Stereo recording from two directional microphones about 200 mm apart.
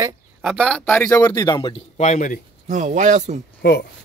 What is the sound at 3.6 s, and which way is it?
Speech, 55° left (ahead or behind).